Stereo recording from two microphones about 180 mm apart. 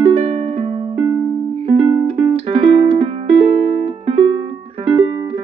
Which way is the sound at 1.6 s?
30° right (ahead or behind).